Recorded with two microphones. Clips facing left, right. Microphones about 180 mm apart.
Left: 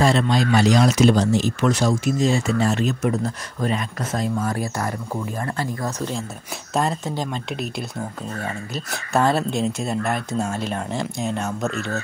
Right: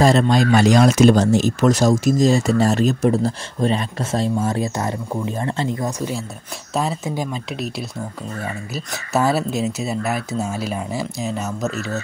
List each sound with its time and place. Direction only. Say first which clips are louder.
0.0 s speech: right 4 dB; 40° right (ahead or behind); by 7.7 s centre (ahead or behind)
8.7 s speech: right 1 dB; 5° right (ahead or behind)